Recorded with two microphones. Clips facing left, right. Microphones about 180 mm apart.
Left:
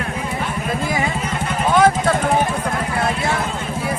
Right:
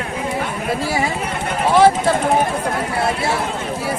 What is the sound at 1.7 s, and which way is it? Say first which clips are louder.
Speech: right 2 dB; 30° right (ahead or behind).